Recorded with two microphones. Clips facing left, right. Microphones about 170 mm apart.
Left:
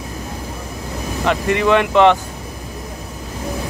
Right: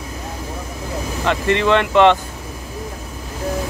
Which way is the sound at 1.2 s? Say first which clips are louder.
Left 1 dB; 15° left (ahead or behind).